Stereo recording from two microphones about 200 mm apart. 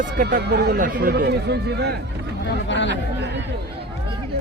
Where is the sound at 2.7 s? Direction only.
65° left (ahead or behind).